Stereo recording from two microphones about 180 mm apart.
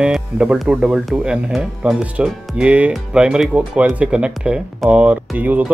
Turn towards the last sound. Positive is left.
turn(degrees=-10)  # may be behind; listen again after turning